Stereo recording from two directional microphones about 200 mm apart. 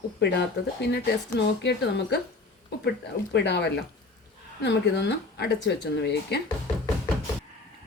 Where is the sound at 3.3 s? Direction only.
60° left (ahead or behind).